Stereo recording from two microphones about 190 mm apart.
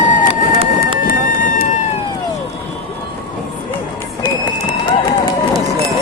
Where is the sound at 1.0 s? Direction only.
45° left (ahead or behind).